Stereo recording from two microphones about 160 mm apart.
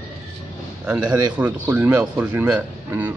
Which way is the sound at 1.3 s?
10° right (ahead or behind).